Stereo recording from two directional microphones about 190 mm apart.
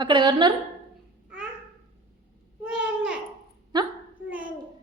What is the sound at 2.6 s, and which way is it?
Babbling, 5° right (ahead or behind).